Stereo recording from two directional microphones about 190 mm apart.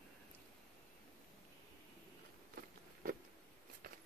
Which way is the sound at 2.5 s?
50° right (ahead or behind).